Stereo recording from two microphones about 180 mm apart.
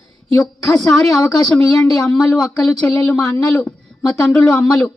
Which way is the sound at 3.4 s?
5° left (ahead or behind).